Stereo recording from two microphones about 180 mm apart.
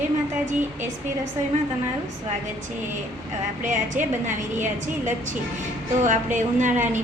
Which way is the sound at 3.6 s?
45° right (ahead or behind).